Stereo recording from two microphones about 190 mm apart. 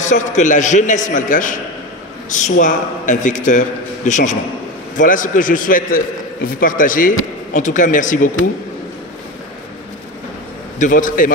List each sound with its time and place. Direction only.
0.0 s a man's voice: 40° left (ahead or behind)
10.8 s a man's voice: 45° left (ahead or behind)